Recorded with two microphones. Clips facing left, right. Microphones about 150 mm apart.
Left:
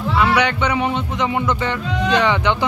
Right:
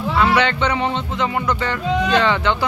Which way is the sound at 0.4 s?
10° left (ahead or behind).